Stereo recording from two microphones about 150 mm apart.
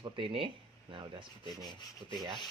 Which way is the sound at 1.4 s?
30° left (ahead or behind).